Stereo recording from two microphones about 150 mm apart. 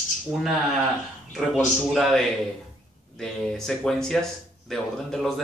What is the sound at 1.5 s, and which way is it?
Speech, centre (ahead or behind).